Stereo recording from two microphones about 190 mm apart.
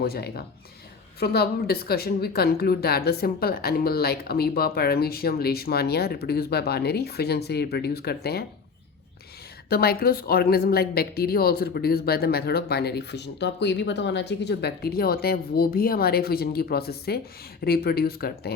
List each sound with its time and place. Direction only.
0.0 s speech: 55° left (ahead or behind)
9.6 s speech: 55° left (ahead or behind)